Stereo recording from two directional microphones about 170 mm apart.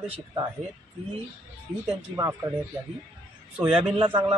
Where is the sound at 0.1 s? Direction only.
25° right (ahead or behind).